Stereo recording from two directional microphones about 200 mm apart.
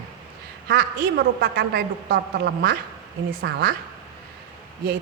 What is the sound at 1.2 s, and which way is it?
A woman's voice, 55° right (ahead or behind).